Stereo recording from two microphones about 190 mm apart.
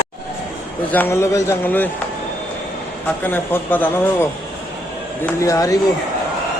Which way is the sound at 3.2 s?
10° left (ahead or behind).